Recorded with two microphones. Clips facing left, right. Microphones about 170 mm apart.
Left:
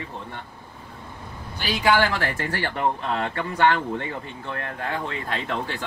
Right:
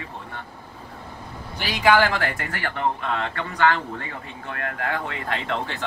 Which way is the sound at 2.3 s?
30° left (ahead or behind).